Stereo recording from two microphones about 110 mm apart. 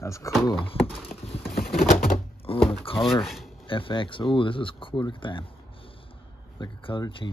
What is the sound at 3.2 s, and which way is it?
Speech, centre (ahead or behind).